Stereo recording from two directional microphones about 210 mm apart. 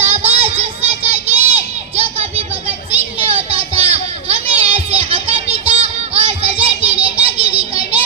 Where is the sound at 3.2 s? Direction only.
25° right (ahead or behind).